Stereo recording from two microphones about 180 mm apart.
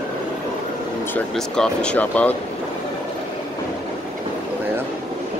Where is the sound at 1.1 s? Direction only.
5° left (ahead or behind).